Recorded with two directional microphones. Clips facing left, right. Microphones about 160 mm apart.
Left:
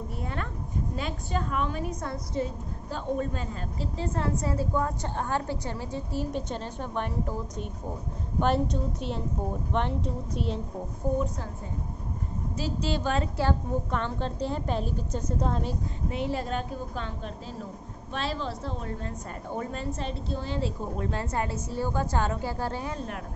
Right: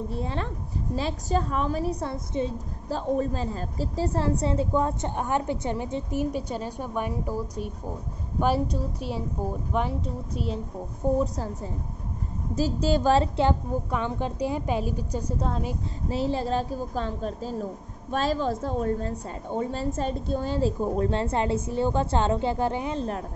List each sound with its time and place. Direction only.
0.1 s a woman's voice: 30° right (ahead or behind)
4.6 s a woman's voice: 20° right (ahead or behind)
6.3 s a woman's voice: 10° right (ahead or behind)
11.0 s a woman's voice: 25° right (ahead or behind)
12.5 s a woman's voice: 40° right (ahead or behind)
13.1 s a woman's voice: 30° right (ahead or behind)
13.5 s a woman's voice: 10° right (ahead or behind)
16.1 s a woman's voice: 30° right (ahead or behind)
19.5 s a woman's voice: 25° right (ahead or behind)
20.0 s a woman's voice: 45° right (ahead or behind)
21.1 s a woman's voice: 25° right (ahead or behind)